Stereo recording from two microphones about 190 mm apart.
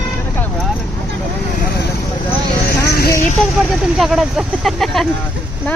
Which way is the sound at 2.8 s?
55° left (ahead or behind).